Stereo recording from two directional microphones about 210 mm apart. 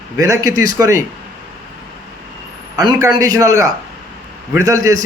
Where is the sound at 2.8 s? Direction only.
15° right (ahead or behind).